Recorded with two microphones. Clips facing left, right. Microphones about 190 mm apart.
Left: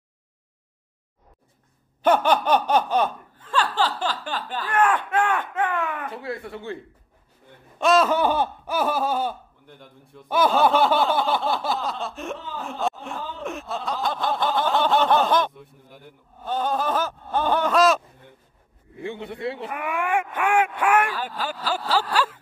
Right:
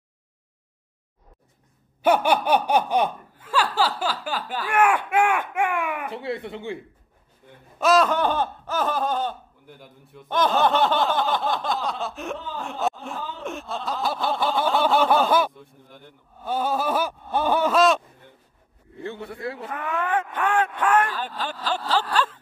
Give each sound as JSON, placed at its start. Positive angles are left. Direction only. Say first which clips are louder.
{"t": 2.0, "sound": "laughter", "louder": "even", "side_deg": -10}
{"t": 6.0, "sound": "speech", "louder": "right 2 dB", "side_deg": -25}
{"t": 7.8, "sound": "speech", "louder": "even", "side_deg": 0}
{"t": 9.7, "sound": "a man's voice", "louder": "right 1 dB", "side_deg": -5}
{"t": 14.4, "sound": "a sound", "louder": "even", "side_deg": -10}
{"t": 15.6, "sound": "a man's voice", "louder": "left 1 dB", "side_deg": 5}
{"t": 16.4, "sound": "a sound", "louder": "even", "side_deg": -10}
{"t": 18.9, "sound": "a man's voice", "louder": "left 2 dB", "side_deg": 15}
{"t": 19.7, "sound": "speech", "louder": "even", "side_deg": 10}